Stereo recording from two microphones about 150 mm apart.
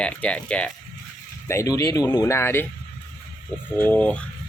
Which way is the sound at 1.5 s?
20° left (ahead or behind).